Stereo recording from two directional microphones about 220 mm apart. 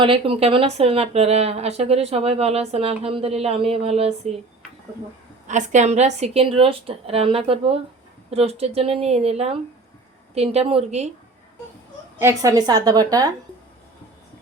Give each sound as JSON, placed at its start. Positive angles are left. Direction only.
{"t": 0.0, "sound": "speech", "side_deg": -25}
{"t": 5.5, "sound": "speech", "side_deg": -35}
{"t": 12.2, "sound": "a woman's voice", "side_deg": -15}